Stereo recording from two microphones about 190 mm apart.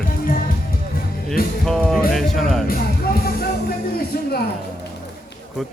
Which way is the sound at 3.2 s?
55° left (ahead or behind).